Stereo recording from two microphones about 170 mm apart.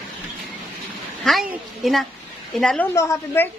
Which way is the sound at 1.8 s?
Centre (ahead or behind).